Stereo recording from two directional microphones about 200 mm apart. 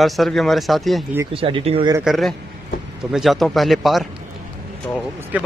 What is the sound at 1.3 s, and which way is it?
Speech, 25° right (ahead or behind).